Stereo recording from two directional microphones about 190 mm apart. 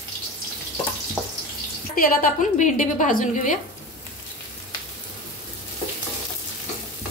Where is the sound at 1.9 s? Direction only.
45° left (ahead or behind).